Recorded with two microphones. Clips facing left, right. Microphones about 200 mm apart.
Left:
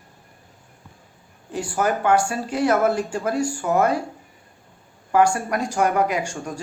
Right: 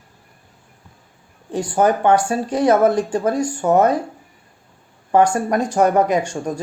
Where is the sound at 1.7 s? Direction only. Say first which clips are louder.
Right 4 dB; 25° right (ahead or behind).